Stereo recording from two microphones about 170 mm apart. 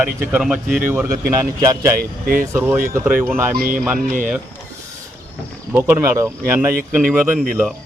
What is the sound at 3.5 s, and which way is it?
Speech, 55° right (ahead or behind).